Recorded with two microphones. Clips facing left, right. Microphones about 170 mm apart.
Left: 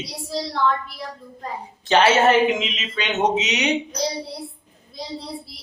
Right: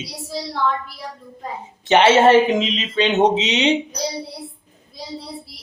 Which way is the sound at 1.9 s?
25° right (ahead or behind).